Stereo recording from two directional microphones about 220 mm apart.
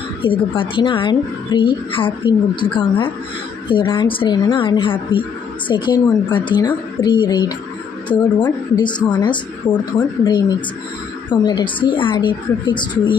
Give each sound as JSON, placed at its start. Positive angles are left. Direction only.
{"t": 0.2, "sound": "a woman's voice", "side_deg": 20}